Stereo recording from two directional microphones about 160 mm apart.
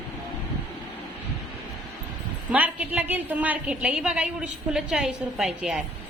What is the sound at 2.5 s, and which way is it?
A woman's voice, 10° right (ahead or behind).